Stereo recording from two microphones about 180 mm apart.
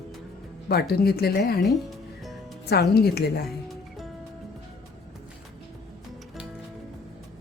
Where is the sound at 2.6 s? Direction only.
65° left (ahead or behind).